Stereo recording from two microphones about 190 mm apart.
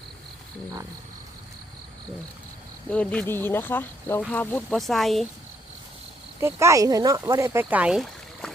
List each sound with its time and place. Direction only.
2.9 s speech: 5° left (ahead or behind)
6.4 s speech: 15° right (ahead or behind)